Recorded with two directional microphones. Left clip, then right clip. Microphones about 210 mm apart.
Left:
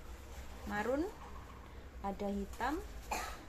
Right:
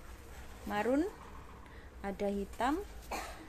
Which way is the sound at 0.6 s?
35° right (ahead or behind).